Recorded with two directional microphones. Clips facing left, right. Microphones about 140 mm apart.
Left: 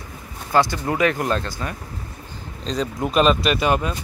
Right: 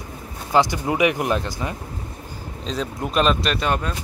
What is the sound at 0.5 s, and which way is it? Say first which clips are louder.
Speech: even; 15° right (ahead or behind).